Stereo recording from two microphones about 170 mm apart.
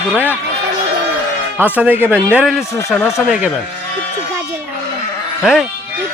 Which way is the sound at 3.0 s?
15° left (ahead or behind).